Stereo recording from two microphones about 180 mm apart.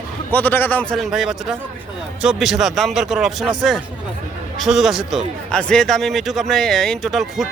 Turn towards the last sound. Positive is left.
turn(degrees=0)  # may be behind; listen again after turning